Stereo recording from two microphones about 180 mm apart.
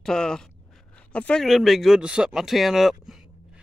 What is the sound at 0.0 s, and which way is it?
Speech, 5° left (ahead or behind).